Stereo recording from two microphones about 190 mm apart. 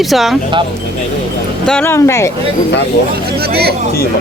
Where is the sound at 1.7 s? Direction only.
10° left (ahead or behind).